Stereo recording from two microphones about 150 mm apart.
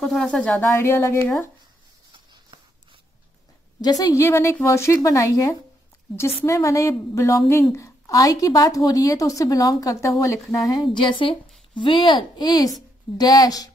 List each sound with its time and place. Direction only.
0.0 s speech: 5° left (ahead or behind)
3.8 s speech: 25° left (ahead or behind)